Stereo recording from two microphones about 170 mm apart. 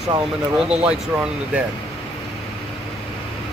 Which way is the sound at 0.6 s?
5° right (ahead or behind).